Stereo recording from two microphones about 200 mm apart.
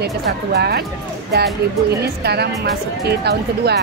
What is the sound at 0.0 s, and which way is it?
Speech, 55° right (ahead or behind).